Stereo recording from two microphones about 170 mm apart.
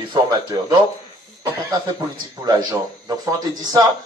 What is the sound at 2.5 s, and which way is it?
A man's voice, 25° right (ahead or behind).